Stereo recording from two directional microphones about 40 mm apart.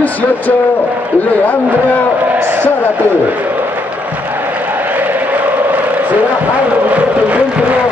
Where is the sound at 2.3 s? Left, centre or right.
Right.